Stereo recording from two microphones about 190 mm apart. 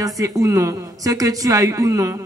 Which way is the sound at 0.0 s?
15° right (ahead or behind).